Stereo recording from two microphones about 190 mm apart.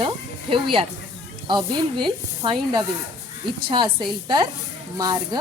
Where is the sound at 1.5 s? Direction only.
25° right (ahead or behind).